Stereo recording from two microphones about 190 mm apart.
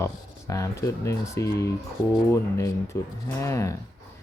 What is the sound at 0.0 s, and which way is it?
Speech, 15° left (ahead or behind).